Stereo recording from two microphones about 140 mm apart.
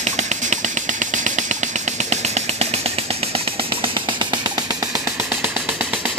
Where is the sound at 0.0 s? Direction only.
55° right (ahead or behind); by 4.8 s 30° right (ahead or behind).